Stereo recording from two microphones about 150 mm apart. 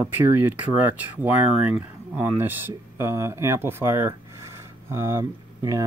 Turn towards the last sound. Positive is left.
turn(degrees=-20)  # may be behind; listen again after turning